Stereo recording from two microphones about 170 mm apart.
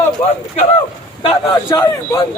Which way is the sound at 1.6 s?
20° left (ahead or behind).